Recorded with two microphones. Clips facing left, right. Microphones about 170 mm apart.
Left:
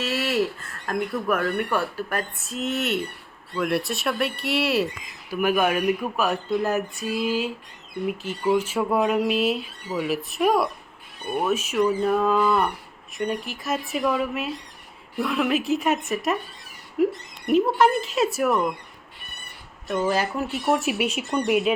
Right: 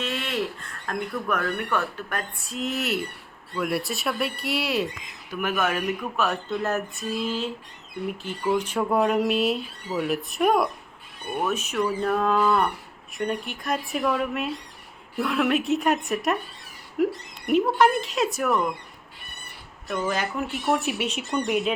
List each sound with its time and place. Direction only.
0.0 s speech: 5° left (ahead or behind)
19.9 s speech: 30° left (ahead or behind)
20.5 s speech: 5° left (ahead or behind)